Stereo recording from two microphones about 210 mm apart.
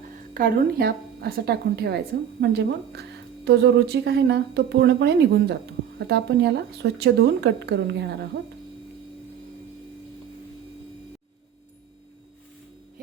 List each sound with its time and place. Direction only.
0.3 s a woman's voice: 45° right (ahead or behind)